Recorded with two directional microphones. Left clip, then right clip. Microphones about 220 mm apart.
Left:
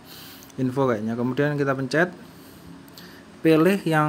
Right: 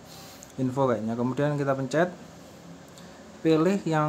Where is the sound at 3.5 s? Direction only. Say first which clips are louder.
Left 5 dB; 15° left (ahead or behind).